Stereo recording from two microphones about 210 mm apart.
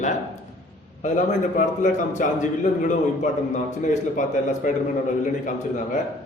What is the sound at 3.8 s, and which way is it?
Speech, 35° left (ahead or behind).